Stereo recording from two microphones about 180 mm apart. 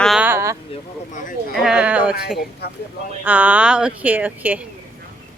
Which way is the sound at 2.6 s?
65° left (ahead or behind).